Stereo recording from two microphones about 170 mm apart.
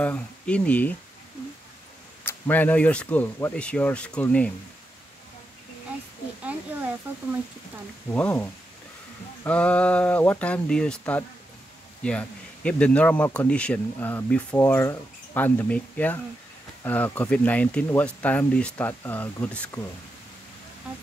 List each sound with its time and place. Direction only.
0.0 s speech: 10° left (ahead or behind)
2.2 s speech: 10° left (ahead or behind)
6.4 s a sound: 10° right (ahead or behind)
8.1 s speech: 10° left (ahead or behind)